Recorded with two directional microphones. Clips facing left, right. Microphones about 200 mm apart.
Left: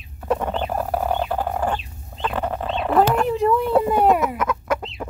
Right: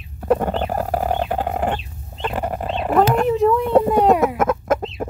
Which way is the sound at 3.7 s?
30° right (ahead or behind).